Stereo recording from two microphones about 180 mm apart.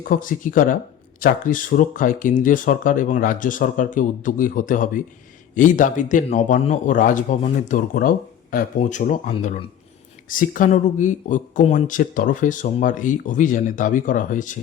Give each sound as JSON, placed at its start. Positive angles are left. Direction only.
{"t": 0.0, "sound": "speech", "side_deg": 50}